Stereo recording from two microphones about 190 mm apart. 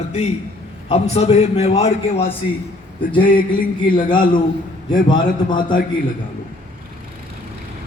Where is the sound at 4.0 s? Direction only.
25° left (ahead or behind).